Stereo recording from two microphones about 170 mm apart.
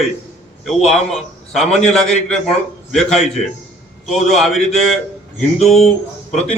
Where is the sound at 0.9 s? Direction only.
Centre (ahead or behind).